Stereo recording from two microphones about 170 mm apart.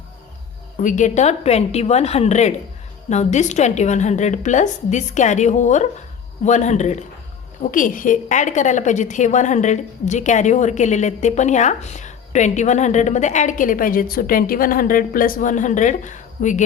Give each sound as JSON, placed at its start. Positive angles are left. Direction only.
{"t": 0.8, "sound": "a woman's voice", "side_deg": 50}